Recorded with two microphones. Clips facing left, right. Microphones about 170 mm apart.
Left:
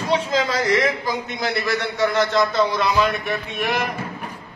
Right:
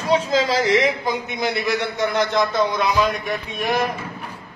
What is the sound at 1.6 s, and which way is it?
A man's voice, 15° right (ahead or behind).